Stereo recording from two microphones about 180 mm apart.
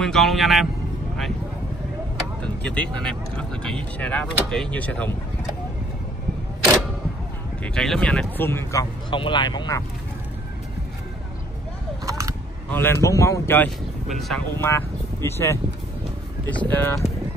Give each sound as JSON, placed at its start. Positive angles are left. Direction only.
{"t": 0.0, "sound": "speech", "side_deg": 0}
{"t": 2.4, "sound": "speech", "side_deg": 5}
{"t": 7.6, "sound": "speech", "side_deg": 5}
{"t": 9.1, "sound": "speech", "side_deg": 25}
{"t": 12.1, "sound": "a sound", "side_deg": -15}
{"t": 12.7, "sound": "speech", "side_deg": 15}
{"t": 14.0, "sound": "speech", "side_deg": 0}
{"t": 14.6, "sound": "speech", "side_deg": 15}